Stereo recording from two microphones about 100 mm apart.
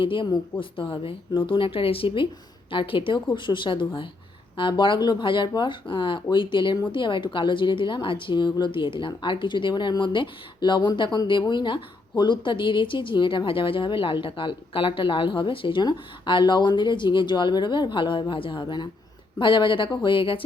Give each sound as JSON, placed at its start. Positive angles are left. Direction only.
{"t": 0.0, "sound": "a woman's voice", "side_deg": 60}